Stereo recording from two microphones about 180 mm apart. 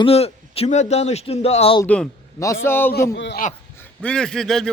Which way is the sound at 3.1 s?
90° left.